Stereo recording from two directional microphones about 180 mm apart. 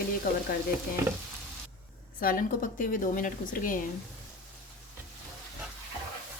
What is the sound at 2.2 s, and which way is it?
A woman's voice, 50° left (ahead or behind).